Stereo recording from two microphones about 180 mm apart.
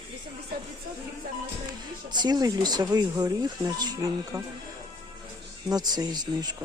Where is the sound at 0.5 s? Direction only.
55° right (ahead or behind).